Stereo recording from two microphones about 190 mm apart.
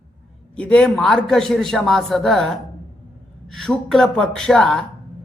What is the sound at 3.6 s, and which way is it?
A man's voice, centre (ahead or behind).